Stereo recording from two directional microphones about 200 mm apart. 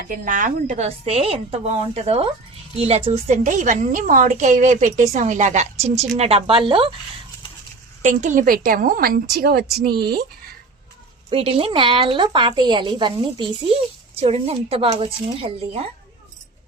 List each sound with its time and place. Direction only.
0.1 s a woman's voice: 40° right (ahead or behind); by 6.9 s 25° right (ahead or behind)
8.0 s a woman's voice: 40° right (ahead or behind)
11.3 s a woman's voice: 30° right (ahead or behind)